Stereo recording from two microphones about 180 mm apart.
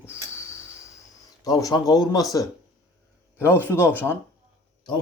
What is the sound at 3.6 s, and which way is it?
Speech, 10° left (ahead or behind).